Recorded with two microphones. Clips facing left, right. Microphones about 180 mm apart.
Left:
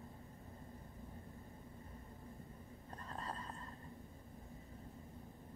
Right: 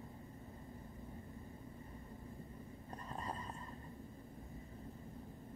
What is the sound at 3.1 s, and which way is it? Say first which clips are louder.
Neigh: right 2 dB; 10° right (ahead or behind).